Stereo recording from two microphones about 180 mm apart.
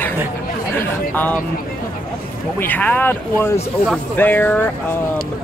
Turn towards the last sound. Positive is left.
turn(degrees=10)  # may be behind; listen again after turning